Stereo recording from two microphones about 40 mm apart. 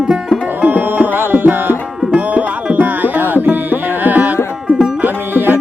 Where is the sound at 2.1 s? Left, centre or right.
Right.